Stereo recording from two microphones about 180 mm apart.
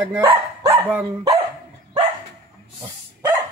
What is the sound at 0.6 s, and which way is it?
Speech, 10° right (ahead or behind).